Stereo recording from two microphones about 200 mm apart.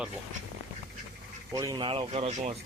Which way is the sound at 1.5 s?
15° right (ahead or behind).